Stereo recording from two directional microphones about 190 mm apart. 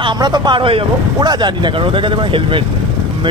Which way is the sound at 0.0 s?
25° right (ahead or behind).